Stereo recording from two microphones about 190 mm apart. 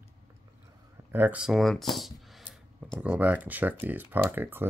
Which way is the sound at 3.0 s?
10° right (ahead or behind).